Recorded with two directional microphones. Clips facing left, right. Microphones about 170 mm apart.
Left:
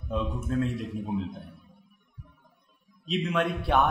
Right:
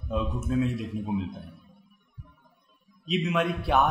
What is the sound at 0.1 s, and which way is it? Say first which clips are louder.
A man's voice: right 1 dB; 5° right (ahead or behind).